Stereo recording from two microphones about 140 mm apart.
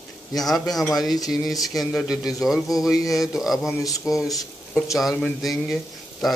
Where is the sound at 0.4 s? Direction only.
Centre (ahead or behind).